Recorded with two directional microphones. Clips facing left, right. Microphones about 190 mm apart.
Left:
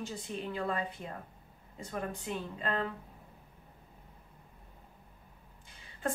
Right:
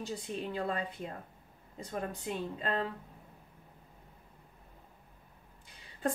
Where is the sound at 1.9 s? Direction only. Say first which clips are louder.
Even; 35° right (ahead or behind).